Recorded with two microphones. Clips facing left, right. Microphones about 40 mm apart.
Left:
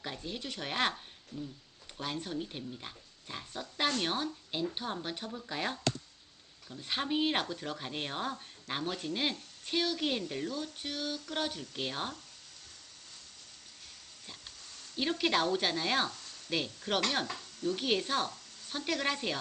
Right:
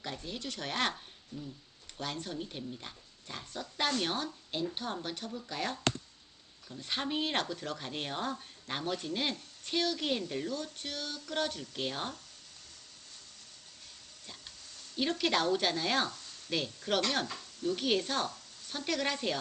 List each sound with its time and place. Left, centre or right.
0.0 s speech: centre
1.3 s a sound: centre
2.0 s speech: centre
6.7 s speech: centre
14.9 s a woman's voice: centre